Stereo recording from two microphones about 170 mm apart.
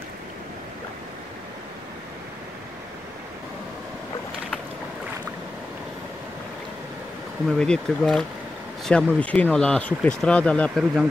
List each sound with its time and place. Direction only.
7.4 s speech: 5° left (ahead or behind)